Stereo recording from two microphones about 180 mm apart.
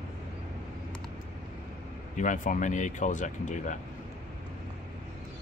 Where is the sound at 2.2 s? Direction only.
45° left (ahead or behind).